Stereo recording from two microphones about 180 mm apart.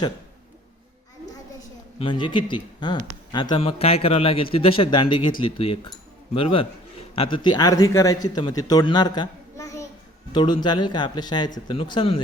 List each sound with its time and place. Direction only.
2.0 s a man's voice: 25° left (ahead or behind)